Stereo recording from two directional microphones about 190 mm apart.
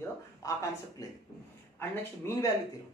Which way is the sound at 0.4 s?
15° left (ahead or behind).